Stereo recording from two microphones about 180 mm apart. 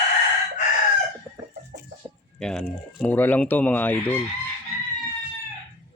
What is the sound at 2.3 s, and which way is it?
Speech, 5° left (ahead or behind).